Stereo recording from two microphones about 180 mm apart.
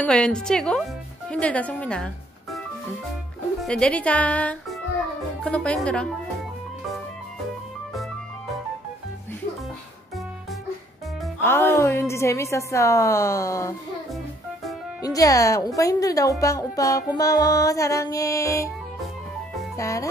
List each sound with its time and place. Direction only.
0.0 s a woman's voice: 5° left (ahead or behind)
3.6 s a woman's voice: 5° left (ahead or behind)
11.4 s a woman's voice: 15° left (ahead or behind)
15.0 s a woman's voice: 20° left (ahead or behind)
19.8 s a woman's voice: 15° left (ahead or behind)